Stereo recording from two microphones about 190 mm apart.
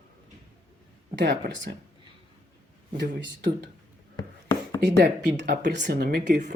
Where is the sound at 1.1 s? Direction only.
70° right (ahead or behind).